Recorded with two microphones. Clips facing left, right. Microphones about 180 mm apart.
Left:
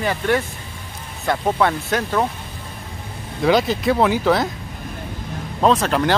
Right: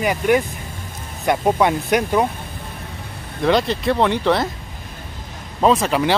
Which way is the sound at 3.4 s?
Centre (ahead or behind).